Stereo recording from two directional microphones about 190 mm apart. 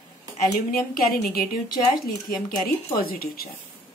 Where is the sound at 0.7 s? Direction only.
50° left (ahead or behind).